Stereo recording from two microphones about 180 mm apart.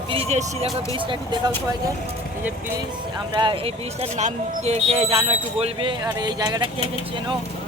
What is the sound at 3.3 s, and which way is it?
Speech, 25° right (ahead or behind).